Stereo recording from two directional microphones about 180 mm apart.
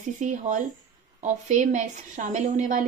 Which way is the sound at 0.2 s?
40° right (ahead or behind).